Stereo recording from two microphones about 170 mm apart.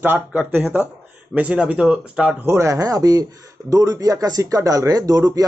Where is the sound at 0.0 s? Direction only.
10° right (ahead or behind).